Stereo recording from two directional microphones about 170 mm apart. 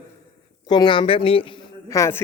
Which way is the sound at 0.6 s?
25° left (ahead or behind).